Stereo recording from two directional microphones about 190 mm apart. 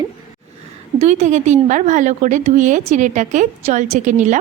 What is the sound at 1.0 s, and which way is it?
A woman's voice, 35° right (ahead or behind).